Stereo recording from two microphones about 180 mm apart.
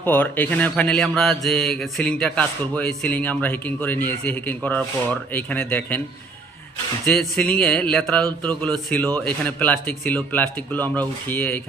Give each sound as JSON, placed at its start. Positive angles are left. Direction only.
{"t": 0.0, "sound": "speech", "side_deg": 10}
{"t": 7.0, "sound": "speech", "side_deg": 5}